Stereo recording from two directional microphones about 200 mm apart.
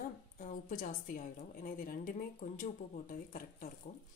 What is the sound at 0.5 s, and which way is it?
Speech, 40° left (ahead or behind).